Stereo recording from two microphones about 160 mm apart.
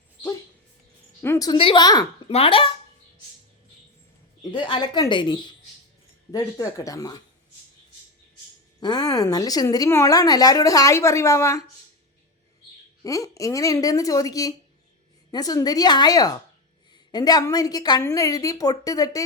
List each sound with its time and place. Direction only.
1.2 s a woman's voice: 15° left (ahead or behind)
1.5 s a woman's voice: 30° left (ahead or behind)
2.3 s speech: 35° left (ahead or behind)
4.5 s a woman's voice: 30° left (ahead or behind)
8.8 s a woman's voice: 25° left (ahead or behind)
13.0 s a woman's voice: 20° left (ahead or behind)